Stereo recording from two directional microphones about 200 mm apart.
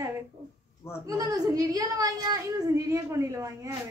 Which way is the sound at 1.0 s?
15° right (ahead or behind).